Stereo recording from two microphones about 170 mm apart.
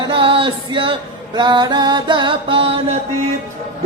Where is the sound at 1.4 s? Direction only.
25° right (ahead or behind).